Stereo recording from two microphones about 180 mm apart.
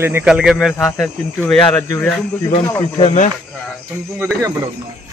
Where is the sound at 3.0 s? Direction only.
40° left (ahead or behind).